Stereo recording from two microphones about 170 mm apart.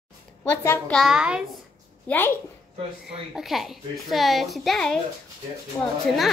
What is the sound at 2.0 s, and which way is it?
Speech, 10° left (ahead or behind).